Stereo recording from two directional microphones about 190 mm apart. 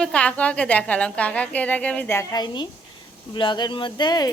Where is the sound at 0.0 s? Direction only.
5° left (ahead or behind).